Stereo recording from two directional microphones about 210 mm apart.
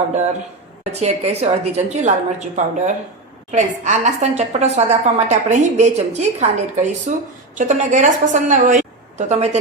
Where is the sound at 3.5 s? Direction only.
35° right (ahead or behind).